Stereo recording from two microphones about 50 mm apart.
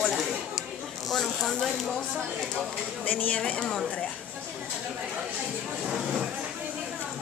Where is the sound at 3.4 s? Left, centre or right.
Centre.